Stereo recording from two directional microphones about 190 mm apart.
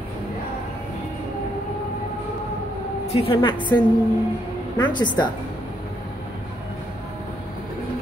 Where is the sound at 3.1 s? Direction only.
30° left (ahead or behind).